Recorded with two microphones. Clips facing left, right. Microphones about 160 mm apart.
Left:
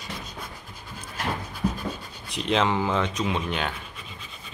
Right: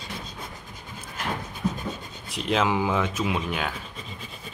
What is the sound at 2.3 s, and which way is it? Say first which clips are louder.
Speech: even; centre (ahead or behind).